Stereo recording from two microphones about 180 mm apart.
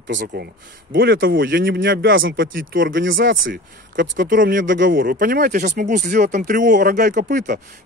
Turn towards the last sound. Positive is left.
turn(degrees=-55)  # may be behind; listen again after turning